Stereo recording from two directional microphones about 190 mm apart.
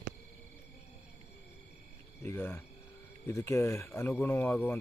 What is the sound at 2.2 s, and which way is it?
Speech, 10° left (ahead or behind).